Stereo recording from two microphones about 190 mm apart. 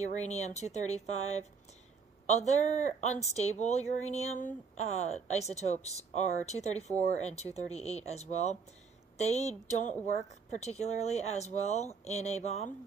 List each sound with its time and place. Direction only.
0.2 s speech: 35° left (ahead or behind)